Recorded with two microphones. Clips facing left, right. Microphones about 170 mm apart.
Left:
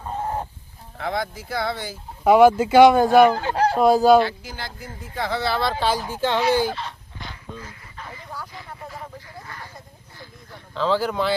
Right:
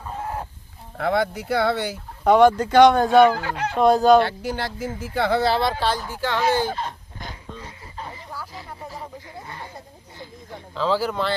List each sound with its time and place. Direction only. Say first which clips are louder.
0.9 s speech: right 5 dB; 60° right (ahead or behind)
2.2 s speech: left 1 dB; 5° left (ahead or behind)
3.3 s speech: left 6 dB; 30° left (ahead or behind)
3.8 s speech: even; centre (ahead or behind)
4.2 s speech: right 1 dB; 60° right (ahead or behind)
5.8 s speech: left 1 dB; 5° left (ahead or behind)
6.1 s speech: left 2 dB; 20° left (ahead or behind)
6.7 s a sound: right 3 dB; 45° right (ahead or behind)
7.6 s a sound: right 3 dB; 30° right (ahead or behind)
9.5 s a sound: right 2 dB; 25° right (ahead or behind)
10.8 s speech: left 1 dB; centre (ahead or behind)